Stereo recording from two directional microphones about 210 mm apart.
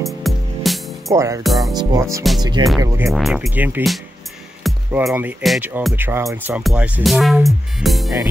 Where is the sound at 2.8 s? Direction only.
10° right (ahead or behind).